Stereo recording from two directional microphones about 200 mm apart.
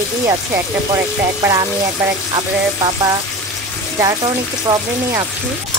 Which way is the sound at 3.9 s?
20° right (ahead or behind).